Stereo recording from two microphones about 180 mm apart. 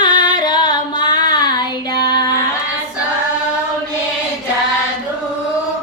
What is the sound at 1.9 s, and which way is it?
Child singing, 25° left (ahead or behind).